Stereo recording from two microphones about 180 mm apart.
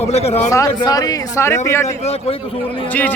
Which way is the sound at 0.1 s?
35° left (ahead or behind).